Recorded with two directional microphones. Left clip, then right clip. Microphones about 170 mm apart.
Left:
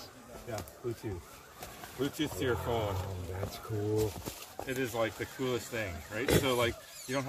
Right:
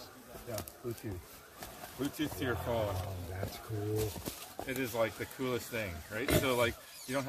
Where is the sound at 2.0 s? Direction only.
Centre (ahead or behind).